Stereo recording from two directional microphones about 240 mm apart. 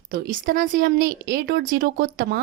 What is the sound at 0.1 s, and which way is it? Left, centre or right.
Speech, right.